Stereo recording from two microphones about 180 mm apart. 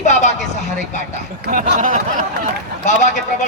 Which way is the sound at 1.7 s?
45° right (ahead or behind).